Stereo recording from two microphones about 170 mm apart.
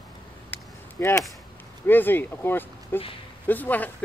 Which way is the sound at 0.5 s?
15° left (ahead or behind).